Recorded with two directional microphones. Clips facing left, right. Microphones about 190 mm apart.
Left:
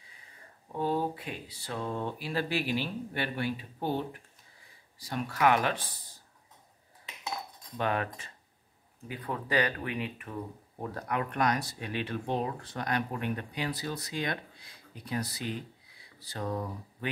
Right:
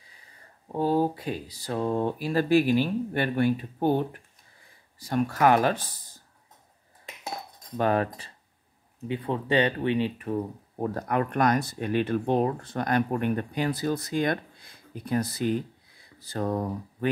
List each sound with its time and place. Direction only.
0.7 s speech: 40° right (ahead or behind)
7.2 s cutlery: 45° right (ahead or behind)
9.0 s speech: 25° right (ahead or behind)
10.8 s speech: 45° right (ahead or behind)